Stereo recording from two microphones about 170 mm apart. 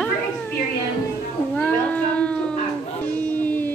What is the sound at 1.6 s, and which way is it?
Cat, 10° left (ahead or behind).